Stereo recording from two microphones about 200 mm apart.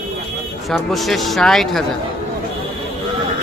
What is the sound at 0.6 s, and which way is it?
A woman's voice, centre (ahead or behind).